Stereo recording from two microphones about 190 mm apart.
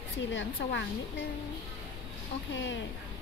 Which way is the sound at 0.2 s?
70° left (ahead or behind).